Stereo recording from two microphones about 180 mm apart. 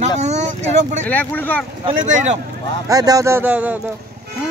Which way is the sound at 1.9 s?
45° right (ahead or behind).